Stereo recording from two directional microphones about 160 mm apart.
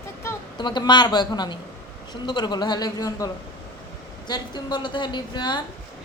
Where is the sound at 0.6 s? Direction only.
25° left (ahead or behind).